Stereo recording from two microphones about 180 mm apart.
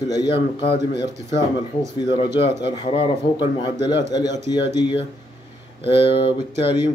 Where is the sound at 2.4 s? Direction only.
25° left (ahead or behind).